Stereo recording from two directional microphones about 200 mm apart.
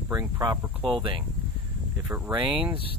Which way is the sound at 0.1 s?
15° right (ahead or behind).